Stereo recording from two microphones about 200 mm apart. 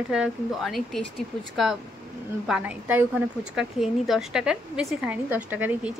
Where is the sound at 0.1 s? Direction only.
Centre (ahead or behind).